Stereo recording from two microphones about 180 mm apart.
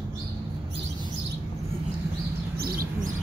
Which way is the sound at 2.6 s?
55° right (ahead or behind).